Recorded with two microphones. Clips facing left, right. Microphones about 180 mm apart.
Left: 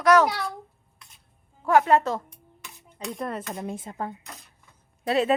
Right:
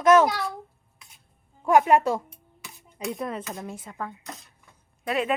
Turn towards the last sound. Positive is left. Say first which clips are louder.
# left 4 dB
turn(degrees=35)  # may be behind; listen again after turning